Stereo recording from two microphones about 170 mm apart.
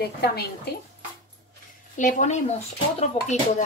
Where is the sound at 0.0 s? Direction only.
70° left (ahead or behind).